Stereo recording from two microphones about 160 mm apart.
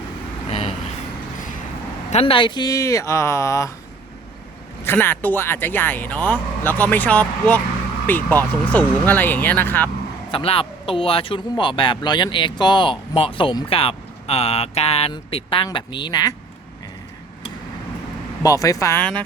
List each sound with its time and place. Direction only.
2.0 s speech: 40° left (ahead or behind); by 3.7 s 20° left (ahead or behind)
4.8 s speech: 15° left (ahead or behind)
10.3 s speech: 35° left (ahead or behind)
18.4 s speech: 20° left (ahead or behind)